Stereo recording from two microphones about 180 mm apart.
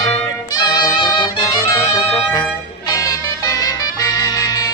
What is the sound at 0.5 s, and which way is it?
Music, 20° left (ahead or behind).